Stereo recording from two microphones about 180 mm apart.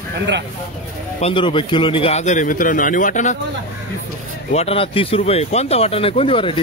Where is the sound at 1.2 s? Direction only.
30° left (ahead or behind); by 3.4 s 45° left (ahead or behind).